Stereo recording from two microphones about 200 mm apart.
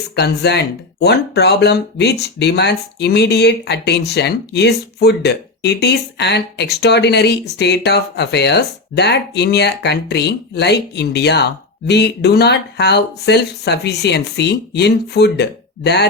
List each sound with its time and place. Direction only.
0.2 s speech: 55° left (ahead or behind)